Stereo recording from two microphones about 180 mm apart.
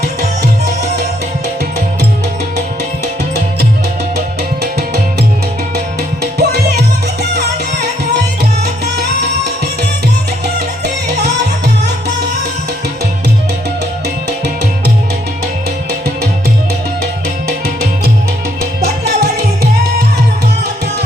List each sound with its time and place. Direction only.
6.4 s music: 65° right (ahead or behind)
10.4 s music: 65° right (ahead or behind)
19.0 s music: 65° right (ahead or behind)